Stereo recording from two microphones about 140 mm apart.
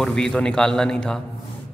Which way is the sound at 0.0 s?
5° left (ahead or behind).